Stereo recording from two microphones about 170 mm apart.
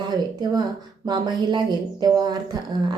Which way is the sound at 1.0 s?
25° right (ahead or behind).